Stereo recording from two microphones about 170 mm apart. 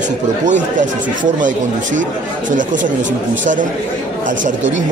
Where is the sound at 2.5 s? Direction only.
50° right (ahead or behind).